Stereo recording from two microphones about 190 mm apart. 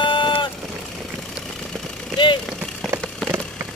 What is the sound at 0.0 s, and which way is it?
Vehicle, 25° left (ahead or behind).